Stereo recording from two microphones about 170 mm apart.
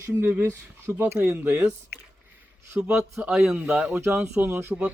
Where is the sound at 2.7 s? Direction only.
5° right (ahead or behind).